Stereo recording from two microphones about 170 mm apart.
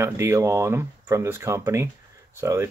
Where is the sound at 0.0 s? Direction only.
15° right (ahead or behind).